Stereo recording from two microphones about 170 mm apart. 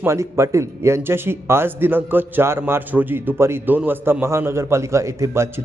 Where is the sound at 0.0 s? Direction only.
15° right (ahead or behind).